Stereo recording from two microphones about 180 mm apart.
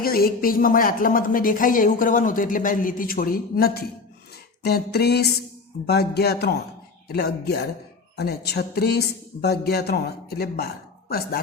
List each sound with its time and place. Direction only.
0.0 s speech: 55° left (ahead or behind)